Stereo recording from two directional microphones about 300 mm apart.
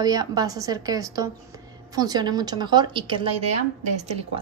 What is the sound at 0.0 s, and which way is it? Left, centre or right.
A woman's voice, centre.